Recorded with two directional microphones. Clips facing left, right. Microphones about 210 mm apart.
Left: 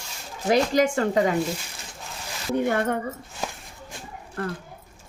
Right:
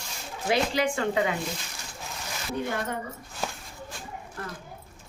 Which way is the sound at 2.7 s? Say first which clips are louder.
Left 9 dB; 60° left (ahead or behind).